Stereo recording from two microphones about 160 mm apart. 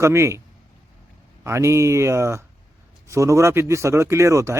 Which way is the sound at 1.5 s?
15° right (ahead or behind).